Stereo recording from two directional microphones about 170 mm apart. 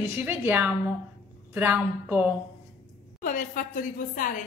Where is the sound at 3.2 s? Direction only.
50° left (ahead or behind).